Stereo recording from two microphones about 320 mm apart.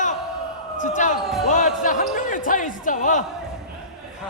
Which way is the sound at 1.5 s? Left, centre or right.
Left.